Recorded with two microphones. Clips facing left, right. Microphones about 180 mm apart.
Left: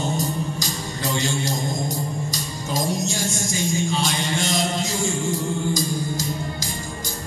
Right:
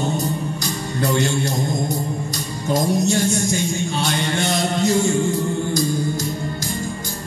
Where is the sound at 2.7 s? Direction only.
60° right (ahead or behind).